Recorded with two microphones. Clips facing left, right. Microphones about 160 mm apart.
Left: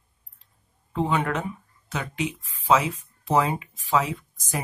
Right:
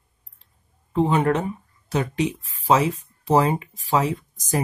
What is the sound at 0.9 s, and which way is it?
Speech, 35° right (ahead or behind).